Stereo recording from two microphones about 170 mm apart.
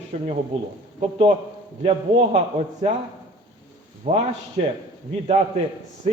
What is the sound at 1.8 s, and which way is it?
A man's voice, 35° right (ahead or behind).